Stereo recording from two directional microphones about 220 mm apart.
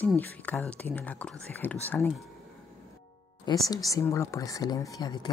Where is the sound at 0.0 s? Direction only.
5° left (ahead or behind).